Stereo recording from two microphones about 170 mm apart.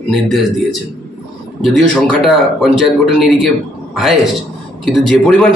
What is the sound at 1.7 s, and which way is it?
A man's voice, 5° left (ahead or behind).